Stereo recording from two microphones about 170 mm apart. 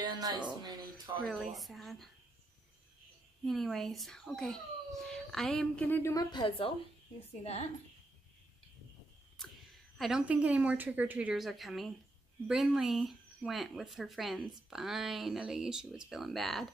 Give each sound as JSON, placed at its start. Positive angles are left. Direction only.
{"t": 0.2, "sound": "speech", "side_deg": -25}
{"t": 1.2, "sound": "speech", "side_deg": 0}
{"t": 3.4, "sound": "speech", "side_deg": 0}
{"t": 6.1, "sound": "a woman's voice", "side_deg": 25}
{"t": 9.9, "sound": "speech", "side_deg": 0}